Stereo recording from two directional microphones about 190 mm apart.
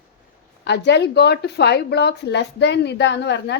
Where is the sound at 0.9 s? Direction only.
60° left (ahead or behind).